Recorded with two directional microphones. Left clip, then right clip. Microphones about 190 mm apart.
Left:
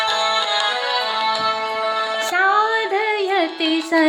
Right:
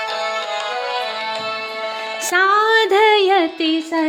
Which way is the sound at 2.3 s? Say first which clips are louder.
Right 4 dB; 40° right (ahead or behind).